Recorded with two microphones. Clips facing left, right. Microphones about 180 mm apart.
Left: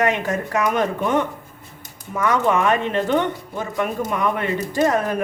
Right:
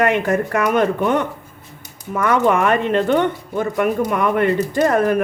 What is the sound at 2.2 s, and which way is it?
A woman's voice, 60° right (ahead or behind).